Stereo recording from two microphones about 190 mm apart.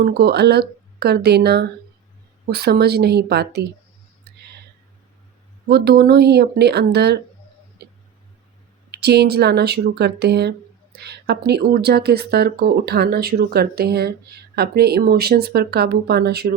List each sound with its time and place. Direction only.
0.0 s speech: 60° right (ahead or behind)
5.6 s speech: 55° right (ahead or behind)
7.8 s tick: 60° right (ahead or behind)
8.9 s speech: 60° right (ahead or behind)